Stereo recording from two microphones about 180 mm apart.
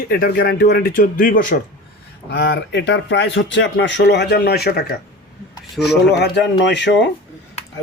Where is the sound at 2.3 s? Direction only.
75° left (ahead or behind); by 4.9 s 60° left (ahead or behind).